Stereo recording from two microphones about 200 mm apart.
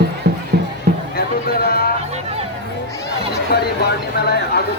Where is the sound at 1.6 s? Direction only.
50° left (ahead or behind).